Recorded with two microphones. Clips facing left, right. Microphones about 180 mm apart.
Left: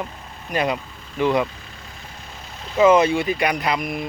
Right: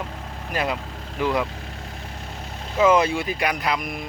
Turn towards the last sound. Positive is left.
turn(degrees=0)  # may be behind; listen again after turning